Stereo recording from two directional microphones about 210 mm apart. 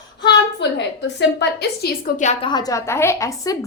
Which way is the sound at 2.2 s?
30° left (ahead or behind).